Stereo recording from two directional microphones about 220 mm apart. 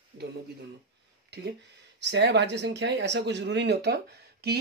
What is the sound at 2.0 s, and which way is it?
Speech, 50° right (ahead or behind).